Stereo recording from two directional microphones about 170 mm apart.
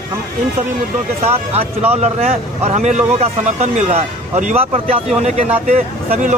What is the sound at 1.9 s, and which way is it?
Speech, 40° right (ahead or behind).